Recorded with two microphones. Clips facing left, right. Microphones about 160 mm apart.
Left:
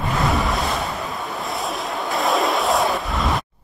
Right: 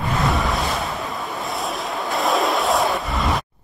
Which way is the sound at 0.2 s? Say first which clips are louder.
Left 1 dB; centre (ahead or behind).